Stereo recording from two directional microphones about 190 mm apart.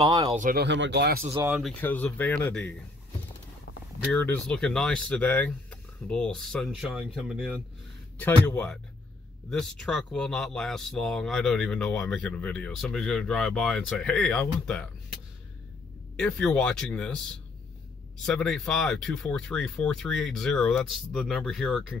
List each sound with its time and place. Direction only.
0.0 s speech: 20° right (ahead or behind)
0.3 s speech: 40° right (ahead or behind)
0.6 s speech: 70° right (ahead or behind)
1.3 s speech: 15° right (ahead or behind)
1.6 s speech: 5° left (ahead or behind)
4.1 s speech: 5° left (ahead or behind)
16.2 s speech: 5° left (ahead or behind)
18.2 s speech: 5° left (ahead or behind)